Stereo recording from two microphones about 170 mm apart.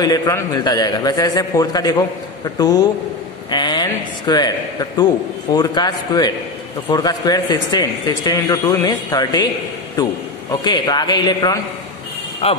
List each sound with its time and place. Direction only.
0.0 s a man's voice: 20° left (ahead or behind)
10.6 s a man's voice: 25° left (ahead or behind)